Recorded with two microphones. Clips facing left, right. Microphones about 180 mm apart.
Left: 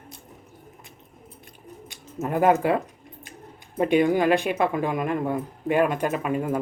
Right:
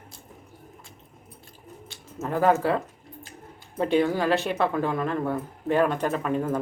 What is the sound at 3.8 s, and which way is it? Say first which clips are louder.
Speech: left 3 dB; 15° left (ahead or behind).